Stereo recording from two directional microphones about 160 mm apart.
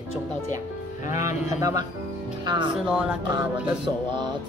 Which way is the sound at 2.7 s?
5° right (ahead or behind).